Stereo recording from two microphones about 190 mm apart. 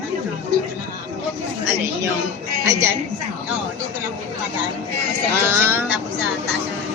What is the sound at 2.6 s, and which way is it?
Speech, 15° right (ahead or behind).